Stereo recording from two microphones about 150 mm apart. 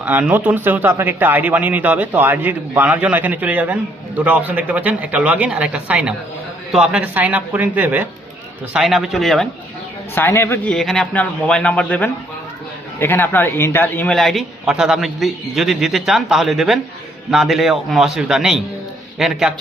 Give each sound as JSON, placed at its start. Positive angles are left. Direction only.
{"t": 0.0, "sound": "speech", "side_deg": -10}
{"t": 8.7, "sound": "a man's voice", "side_deg": 0}
{"t": 10.2, "sound": "a man's voice", "side_deg": 15}
{"t": 10.7, "sound": "a man's voice", "side_deg": 0}
{"t": 14.2, "sound": "a man's voice", "side_deg": 0}